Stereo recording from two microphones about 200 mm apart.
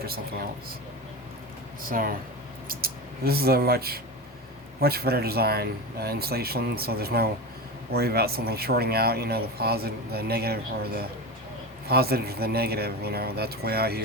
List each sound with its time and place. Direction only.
1.9 s speech: 45° right (ahead or behind)